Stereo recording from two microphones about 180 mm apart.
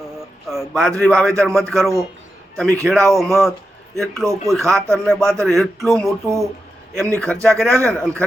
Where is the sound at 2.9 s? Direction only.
Centre (ahead or behind).